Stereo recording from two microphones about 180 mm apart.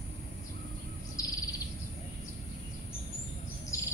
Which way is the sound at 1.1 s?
20° left (ahead or behind).